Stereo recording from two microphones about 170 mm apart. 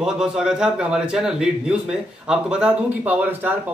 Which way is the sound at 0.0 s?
5° right (ahead or behind).